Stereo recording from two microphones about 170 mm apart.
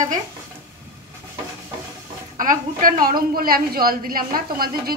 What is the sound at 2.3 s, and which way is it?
Dishes, 55° right (ahead or behind).